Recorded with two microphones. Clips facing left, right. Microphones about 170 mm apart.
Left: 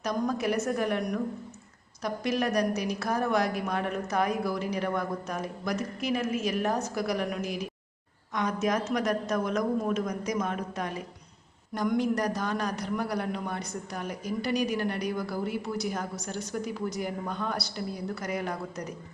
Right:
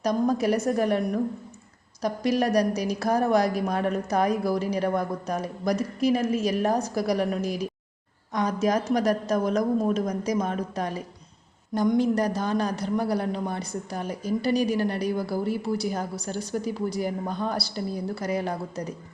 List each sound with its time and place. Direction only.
0.0 s a man's voice: 35° right (ahead or behind)